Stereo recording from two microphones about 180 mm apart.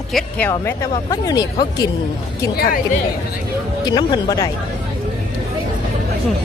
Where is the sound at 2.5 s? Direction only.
55° left (ahead or behind).